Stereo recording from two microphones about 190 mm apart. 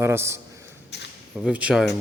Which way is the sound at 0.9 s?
60° left (ahead or behind).